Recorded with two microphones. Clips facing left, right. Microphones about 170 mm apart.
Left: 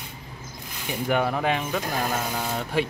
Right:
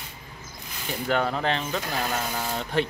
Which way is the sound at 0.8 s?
10° left (ahead or behind).